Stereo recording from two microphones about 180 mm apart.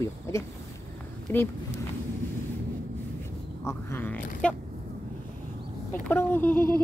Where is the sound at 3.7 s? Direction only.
10° left (ahead or behind).